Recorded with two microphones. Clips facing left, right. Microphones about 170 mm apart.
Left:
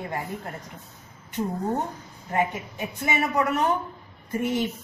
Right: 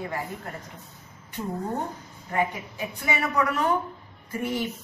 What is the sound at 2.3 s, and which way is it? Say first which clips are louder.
A woman's voice: left 1 dB; 20° left (ahead or behind).